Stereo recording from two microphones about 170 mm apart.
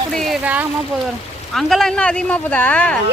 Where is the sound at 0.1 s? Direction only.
Centre (ahead or behind).